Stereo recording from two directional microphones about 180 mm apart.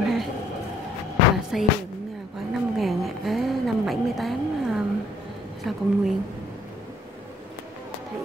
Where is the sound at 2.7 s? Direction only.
Centre (ahead or behind).